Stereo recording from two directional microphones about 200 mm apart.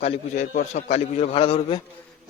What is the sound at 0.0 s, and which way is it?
A man's voice, 35° left (ahead or behind).